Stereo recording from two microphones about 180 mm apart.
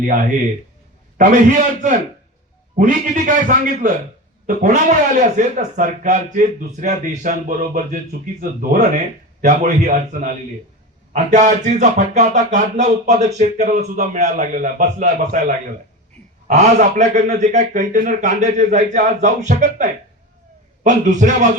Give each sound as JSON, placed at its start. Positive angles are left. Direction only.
{"t": 1.2, "sound": "a man's voice", "side_deg": -45}